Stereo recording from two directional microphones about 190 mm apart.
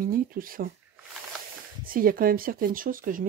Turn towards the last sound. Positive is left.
turn(degrees=-45)  # may be behind; listen again after turning